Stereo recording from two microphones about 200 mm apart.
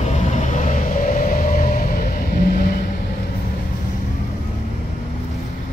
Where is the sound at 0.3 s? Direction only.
35° left (ahead or behind).